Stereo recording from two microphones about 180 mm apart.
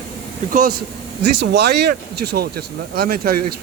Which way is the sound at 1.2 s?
65° right (ahead or behind).